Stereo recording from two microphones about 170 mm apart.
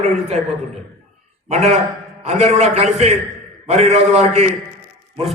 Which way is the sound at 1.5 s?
40° right (ahead or behind).